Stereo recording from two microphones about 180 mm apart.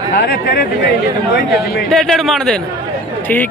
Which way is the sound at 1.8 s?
Centre (ahead or behind).